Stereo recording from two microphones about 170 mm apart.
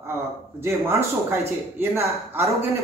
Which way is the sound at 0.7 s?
15° right (ahead or behind).